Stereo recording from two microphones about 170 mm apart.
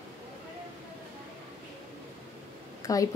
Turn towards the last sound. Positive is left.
turn(degrees=20)  # may be behind; listen again after turning